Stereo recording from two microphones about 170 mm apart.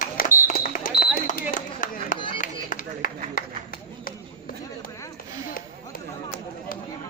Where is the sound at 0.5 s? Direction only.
55° left (ahead or behind).